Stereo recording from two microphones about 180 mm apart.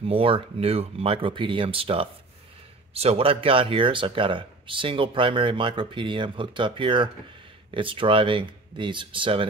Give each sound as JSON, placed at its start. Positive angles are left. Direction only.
{"t": 0.0, "sound": "speech", "side_deg": -30}